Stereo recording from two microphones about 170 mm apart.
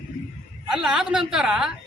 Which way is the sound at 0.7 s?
5° right (ahead or behind).